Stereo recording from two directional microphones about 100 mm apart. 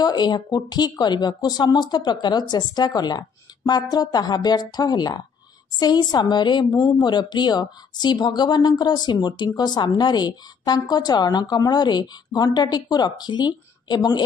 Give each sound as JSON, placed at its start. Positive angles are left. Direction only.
{"t": 0.0, "sound": "speech", "side_deg": 45}